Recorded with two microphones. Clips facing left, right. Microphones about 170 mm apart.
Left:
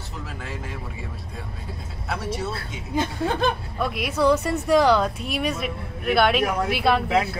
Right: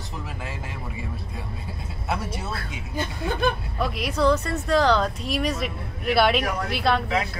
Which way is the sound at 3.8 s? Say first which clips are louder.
Left 1 dB; 5° left (ahead or behind).